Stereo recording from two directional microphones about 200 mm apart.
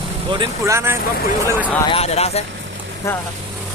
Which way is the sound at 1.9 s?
30° left (ahead or behind).